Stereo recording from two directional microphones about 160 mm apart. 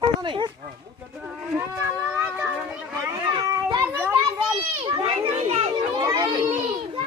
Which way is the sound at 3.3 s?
20° right (ahead or behind).